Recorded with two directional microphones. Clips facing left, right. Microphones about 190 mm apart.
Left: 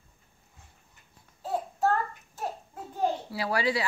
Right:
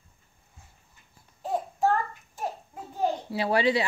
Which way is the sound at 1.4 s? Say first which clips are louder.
Right 2 dB; 15° right (ahead or behind).